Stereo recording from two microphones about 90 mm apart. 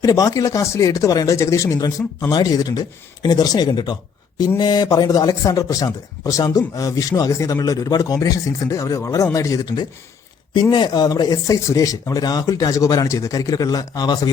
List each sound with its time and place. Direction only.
0.0 s a man's voice: 40° left (ahead or behind)
2.3 s a man's voice: 50° left (ahead or behind)
10.5 s speech: 55° left (ahead or behind)